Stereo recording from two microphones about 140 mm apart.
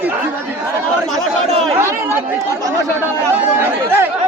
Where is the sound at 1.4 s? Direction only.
45° right (ahead or behind).